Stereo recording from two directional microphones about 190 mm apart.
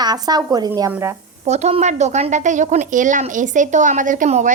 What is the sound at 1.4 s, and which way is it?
A woman's voice, 35° right (ahead or behind).